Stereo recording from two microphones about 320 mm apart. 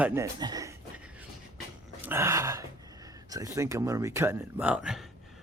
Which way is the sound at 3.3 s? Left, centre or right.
Centre.